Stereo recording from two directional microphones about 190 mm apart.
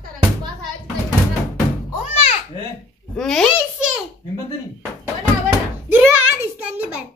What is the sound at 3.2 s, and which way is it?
Speech, centre (ahead or behind).